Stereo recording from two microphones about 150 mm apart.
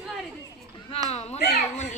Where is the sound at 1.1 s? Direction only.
45° left (ahead or behind).